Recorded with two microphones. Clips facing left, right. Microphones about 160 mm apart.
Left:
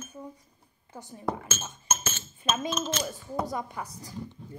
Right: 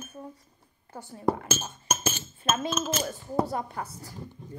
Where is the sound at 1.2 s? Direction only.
35° right (ahead or behind).